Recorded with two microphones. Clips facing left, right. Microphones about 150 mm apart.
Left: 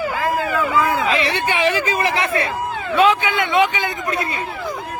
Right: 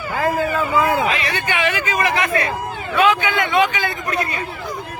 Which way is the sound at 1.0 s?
30° left (ahead or behind).